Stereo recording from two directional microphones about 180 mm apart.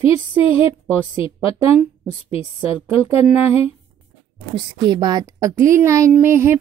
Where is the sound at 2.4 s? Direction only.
35° left (ahead or behind).